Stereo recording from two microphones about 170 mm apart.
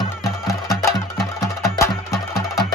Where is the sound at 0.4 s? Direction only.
20° left (ahead or behind).